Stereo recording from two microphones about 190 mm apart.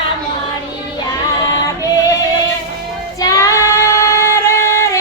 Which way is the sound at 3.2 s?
15° left (ahead or behind).